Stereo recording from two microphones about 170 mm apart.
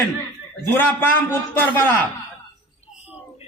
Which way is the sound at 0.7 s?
10° left (ahead or behind).